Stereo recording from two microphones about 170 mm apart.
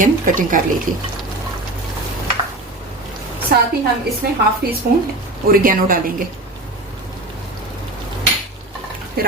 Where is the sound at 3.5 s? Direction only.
65° right (ahead or behind).